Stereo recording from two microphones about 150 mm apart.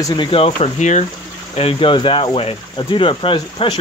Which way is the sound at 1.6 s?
40° left (ahead or behind).